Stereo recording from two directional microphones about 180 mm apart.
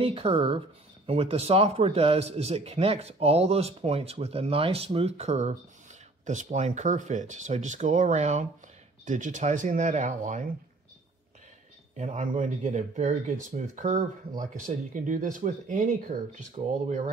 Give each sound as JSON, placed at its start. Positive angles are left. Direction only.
{"t": 0.0, "sound": "a man's voice", "side_deg": -30}
{"t": 12.0, "sound": "speech", "side_deg": -40}